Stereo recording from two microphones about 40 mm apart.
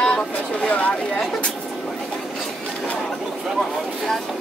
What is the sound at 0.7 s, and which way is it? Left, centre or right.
Speech, left.